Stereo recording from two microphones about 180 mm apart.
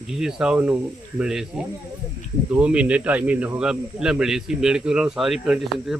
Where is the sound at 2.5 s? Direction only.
5° right (ahead or behind).